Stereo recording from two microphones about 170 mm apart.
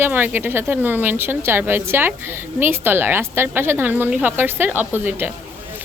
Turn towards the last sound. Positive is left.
turn(degrees=-10)  # may be behind; listen again after turning